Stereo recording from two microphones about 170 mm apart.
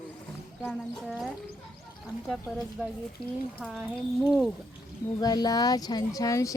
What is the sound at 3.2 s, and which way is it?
Speech, 65° left (ahead or behind).